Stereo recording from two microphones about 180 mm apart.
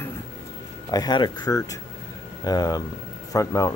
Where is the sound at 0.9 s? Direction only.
20° left (ahead or behind).